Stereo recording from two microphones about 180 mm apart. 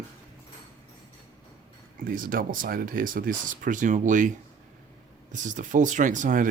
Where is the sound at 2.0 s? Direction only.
50° right (ahead or behind).